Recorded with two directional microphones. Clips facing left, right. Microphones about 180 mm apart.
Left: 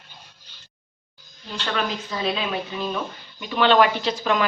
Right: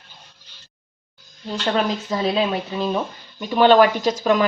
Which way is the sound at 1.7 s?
35° right (ahead or behind).